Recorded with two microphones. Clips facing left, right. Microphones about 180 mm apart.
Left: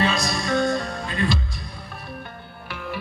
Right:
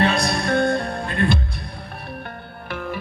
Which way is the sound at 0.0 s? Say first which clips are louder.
Right 3 dB; 60° right (ahead or behind).